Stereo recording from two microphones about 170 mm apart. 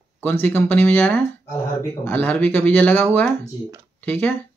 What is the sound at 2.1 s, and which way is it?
Speech, 10° left (ahead or behind).